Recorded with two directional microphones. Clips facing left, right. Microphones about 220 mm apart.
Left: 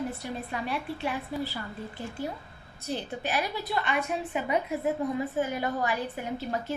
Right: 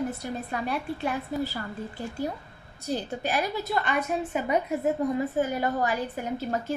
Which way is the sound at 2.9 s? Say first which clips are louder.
Right 3 dB; 45° right (ahead or behind).